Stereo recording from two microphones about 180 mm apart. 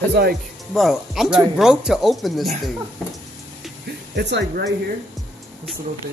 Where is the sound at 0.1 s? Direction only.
65° right (ahead or behind).